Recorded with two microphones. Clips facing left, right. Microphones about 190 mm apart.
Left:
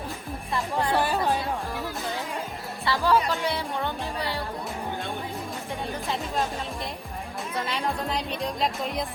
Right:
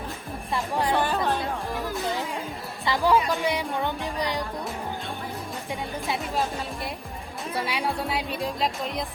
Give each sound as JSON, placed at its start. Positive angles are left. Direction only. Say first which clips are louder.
{"t": 0.5, "sound": "speech", "louder": "right 1 dB", "side_deg": -20}
{"t": 0.9, "sound": "music", "louder": "left 2 dB", "side_deg": 10}
{"t": 2.8, "sound": "speech", "louder": "right 1 dB", "side_deg": -15}
{"t": 7.5, "sound": "speech", "louder": "right 1 dB", "side_deg": -10}